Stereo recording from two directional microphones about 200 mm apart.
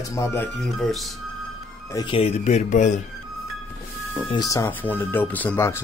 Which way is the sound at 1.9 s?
20° left (ahead or behind).